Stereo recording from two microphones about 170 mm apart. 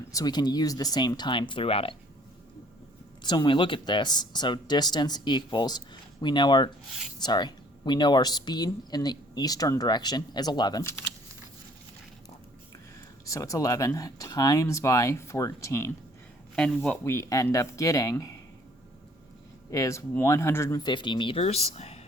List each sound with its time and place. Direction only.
0.1 s speech: 20° left (ahead or behind)
3.2 s speech: 25° left (ahead or behind)
13.2 s speech: 20° left (ahead or behind)
16.6 s speech: 5° left (ahead or behind)
17.0 s speech: 20° left (ahead or behind)
19.7 s speech: 20° left (ahead or behind); by 22.0 s 40° left (ahead or behind)